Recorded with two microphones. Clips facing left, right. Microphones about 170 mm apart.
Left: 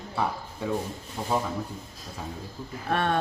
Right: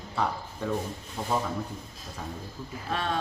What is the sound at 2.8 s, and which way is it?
Sheep, 60° left (ahead or behind).